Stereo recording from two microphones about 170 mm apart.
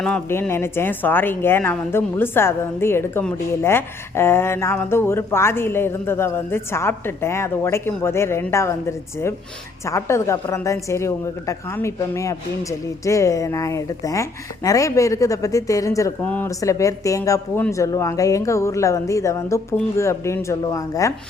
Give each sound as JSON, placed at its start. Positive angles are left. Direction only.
{"t": 0.0, "sound": "a woman's voice", "side_deg": 10}